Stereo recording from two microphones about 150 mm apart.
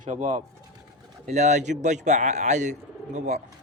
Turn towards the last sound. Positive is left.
turn(degrees=-50)  # may be behind; listen again after turning